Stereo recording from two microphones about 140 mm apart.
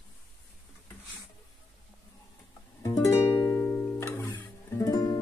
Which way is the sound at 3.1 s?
20° left (ahead or behind).